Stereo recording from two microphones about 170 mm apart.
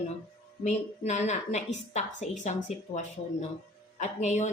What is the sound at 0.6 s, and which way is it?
Speech, 40° left (ahead or behind).